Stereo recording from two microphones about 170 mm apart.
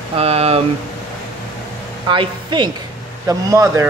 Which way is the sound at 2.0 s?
25° right (ahead or behind).